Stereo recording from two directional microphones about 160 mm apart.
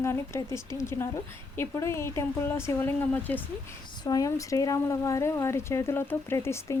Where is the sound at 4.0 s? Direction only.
25° left (ahead or behind).